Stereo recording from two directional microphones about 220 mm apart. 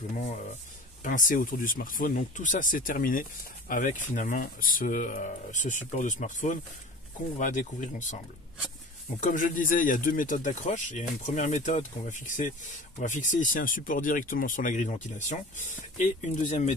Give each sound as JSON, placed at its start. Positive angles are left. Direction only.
{"t": 1.0, "sound": "speech", "side_deg": 35}
{"t": 9.2, "sound": "speech", "side_deg": 35}